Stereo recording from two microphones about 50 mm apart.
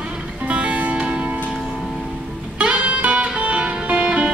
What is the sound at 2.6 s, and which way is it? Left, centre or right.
Music, right.